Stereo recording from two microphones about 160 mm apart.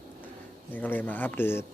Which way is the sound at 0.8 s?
10° left (ahead or behind).